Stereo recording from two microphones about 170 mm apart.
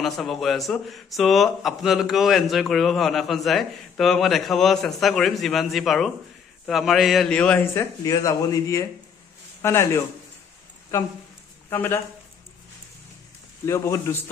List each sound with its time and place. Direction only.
0.0 s a man's voice: centre (ahead or behind)
8.0 s a man's voice: 20° left (ahead or behind)
11.7 s a man's voice: 10° left (ahead or behind)
13.7 s a man's voice: 20° left (ahead or behind)